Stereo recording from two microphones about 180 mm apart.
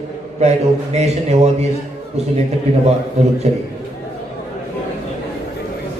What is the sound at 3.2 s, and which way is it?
Speech, 35° right (ahead or behind).